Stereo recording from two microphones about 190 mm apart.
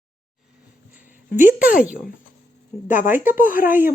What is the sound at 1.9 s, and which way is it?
Speech, 50° left (ahead or behind).